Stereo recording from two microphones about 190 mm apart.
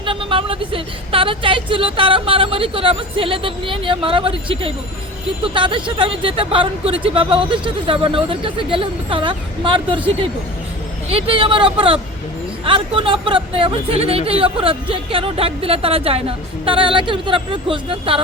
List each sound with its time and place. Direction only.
0.0 s speech: 25° right (ahead or behind)
11.1 s speech: 30° right (ahead or behind)